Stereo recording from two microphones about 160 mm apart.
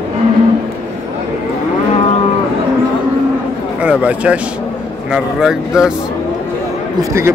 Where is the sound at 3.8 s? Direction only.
10° right (ahead or behind).